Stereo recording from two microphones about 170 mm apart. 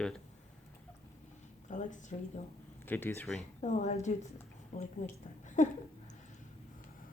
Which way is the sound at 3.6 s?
45° left (ahead or behind).